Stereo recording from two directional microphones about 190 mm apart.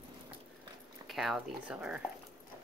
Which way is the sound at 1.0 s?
Centre (ahead or behind).